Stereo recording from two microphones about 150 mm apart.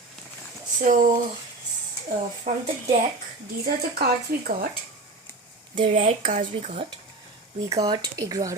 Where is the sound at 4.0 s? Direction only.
90° right.